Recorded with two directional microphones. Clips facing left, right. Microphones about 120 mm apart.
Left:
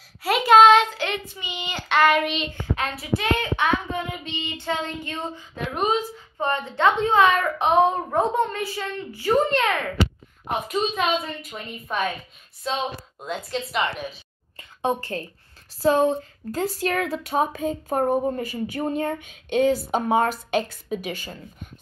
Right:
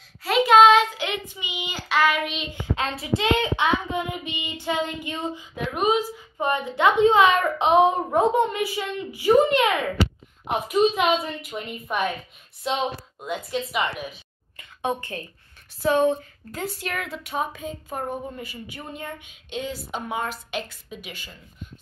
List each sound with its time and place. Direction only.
0.2 s a sound: centre (ahead or behind)
0.9 s child singing: 15° right (ahead or behind)
2.5 s speech: 25° right (ahead or behind)
4.1 s child singing: 10° right (ahead or behind)
13.2 s a woman's voice: 5° right (ahead or behind)
14.6 s a sound: 30° left (ahead or behind)
15.8 s speech: 30° left (ahead or behind)